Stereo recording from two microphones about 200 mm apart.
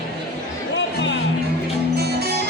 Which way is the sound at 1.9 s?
50° right (ahead or behind).